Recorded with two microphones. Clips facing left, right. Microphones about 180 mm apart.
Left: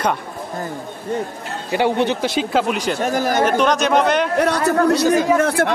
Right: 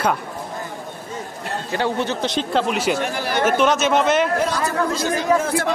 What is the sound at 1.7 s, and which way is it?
A man's voice, 15° left (ahead or behind).